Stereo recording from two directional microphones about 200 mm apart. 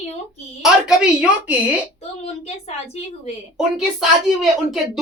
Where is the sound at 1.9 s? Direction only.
30° left (ahead or behind).